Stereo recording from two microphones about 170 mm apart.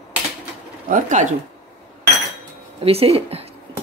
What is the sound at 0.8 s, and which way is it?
Speech, 50° right (ahead or behind).